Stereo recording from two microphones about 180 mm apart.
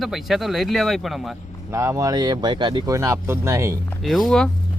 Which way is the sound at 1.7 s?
15° right (ahead or behind).